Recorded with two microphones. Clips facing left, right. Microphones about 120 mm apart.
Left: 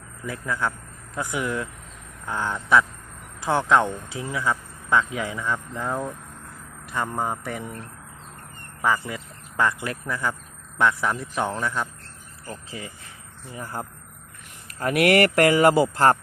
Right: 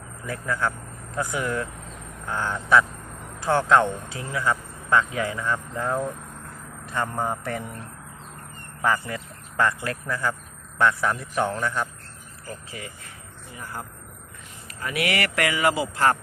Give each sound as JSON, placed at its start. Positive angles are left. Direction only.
{"t": 0.3, "sound": "speech", "side_deg": 15}
{"t": 8.8, "sound": "speech", "side_deg": 15}
{"t": 13.7, "sound": "speech", "side_deg": 40}
{"t": 14.8, "sound": "speech", "side_deg": 55}